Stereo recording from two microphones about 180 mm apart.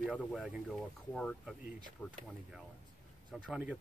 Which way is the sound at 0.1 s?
5° left (ahead or behind).